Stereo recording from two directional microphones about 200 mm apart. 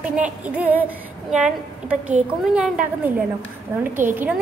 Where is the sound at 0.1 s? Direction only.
5° right (ahead or behind).